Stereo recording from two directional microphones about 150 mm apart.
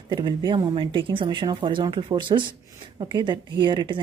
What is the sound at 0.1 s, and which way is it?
A woman's voice, 30° right (ahead or behind).